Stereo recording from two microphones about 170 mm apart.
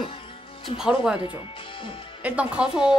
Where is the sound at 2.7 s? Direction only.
30° left (ahead or behind).